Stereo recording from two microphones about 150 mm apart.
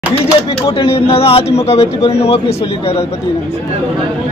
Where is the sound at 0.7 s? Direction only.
40° left (ahead or behind).